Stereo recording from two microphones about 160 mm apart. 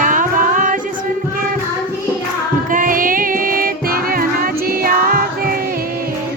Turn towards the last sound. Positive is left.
turn(degrees=-65)  # may be behind; listen again after turning